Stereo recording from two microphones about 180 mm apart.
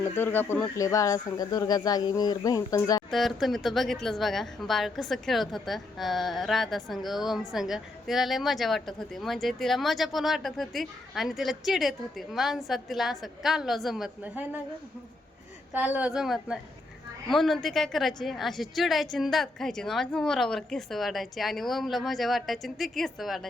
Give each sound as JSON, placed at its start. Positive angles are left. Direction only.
{"t": 0.0, "sound": "speech", "side_deg": 10}
{"t": 3.1, "sound": "a woman's voice", "side_deg": 0}
{"t": 15.7, "sound": "a woman's voice", "side_deg": -10}